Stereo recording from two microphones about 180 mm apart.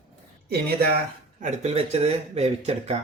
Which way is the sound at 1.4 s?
35° right (ahead or behind).